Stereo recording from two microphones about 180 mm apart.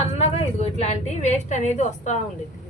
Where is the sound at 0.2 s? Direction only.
35° left (ahead or behind).